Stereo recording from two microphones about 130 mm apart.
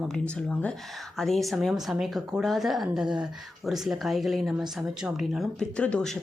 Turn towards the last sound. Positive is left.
turn(degrees=5)  # may be behind; listen again after turning